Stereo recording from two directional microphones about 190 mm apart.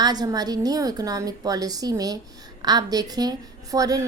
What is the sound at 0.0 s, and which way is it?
A woman's voice, 20° right (ahead or behind).